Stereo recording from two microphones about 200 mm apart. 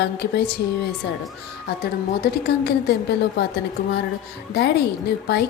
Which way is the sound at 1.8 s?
55° left (ahead or behind).